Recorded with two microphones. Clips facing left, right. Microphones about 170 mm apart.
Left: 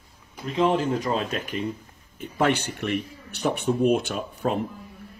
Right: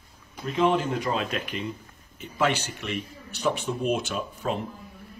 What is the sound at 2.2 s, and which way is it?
Speech, 55° left (ahead or behind).